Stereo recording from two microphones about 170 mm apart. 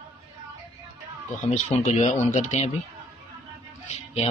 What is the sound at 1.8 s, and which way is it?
Speech, 45° left (ahead or behind).